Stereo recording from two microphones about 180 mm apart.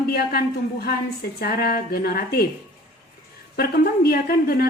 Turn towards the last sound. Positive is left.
turn(degrees=55)  # may be behind; listen again after turning